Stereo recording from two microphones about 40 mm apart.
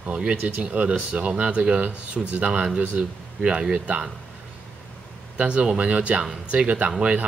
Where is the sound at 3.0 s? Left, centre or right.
Right.